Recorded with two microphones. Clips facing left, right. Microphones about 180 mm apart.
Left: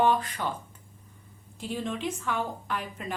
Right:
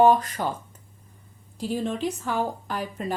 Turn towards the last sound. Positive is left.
turn(degrees=-35)  # may be behind; listen again after turning